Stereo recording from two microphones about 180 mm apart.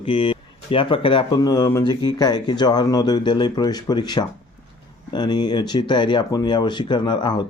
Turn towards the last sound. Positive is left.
turn(degrees=25)  # may be behind; listen again after turning